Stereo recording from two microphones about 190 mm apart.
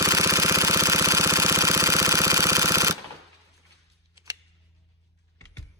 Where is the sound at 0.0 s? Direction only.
15° right (ahead or behind).